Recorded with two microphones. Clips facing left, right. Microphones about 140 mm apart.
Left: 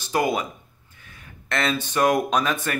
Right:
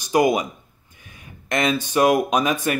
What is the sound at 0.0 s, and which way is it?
Speech, 15° right (ahead or behind).